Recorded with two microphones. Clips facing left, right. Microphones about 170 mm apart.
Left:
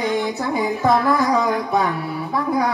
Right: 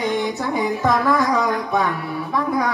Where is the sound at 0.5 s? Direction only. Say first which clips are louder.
Left 2 dB; 35° left (ahead or behind).